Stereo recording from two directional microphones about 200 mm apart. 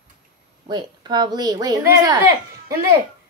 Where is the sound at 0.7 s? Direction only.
20° right (ahead or behind).